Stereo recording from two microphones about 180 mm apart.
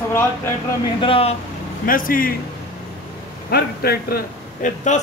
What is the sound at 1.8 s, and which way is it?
Speech, 50° left (ahead or behind).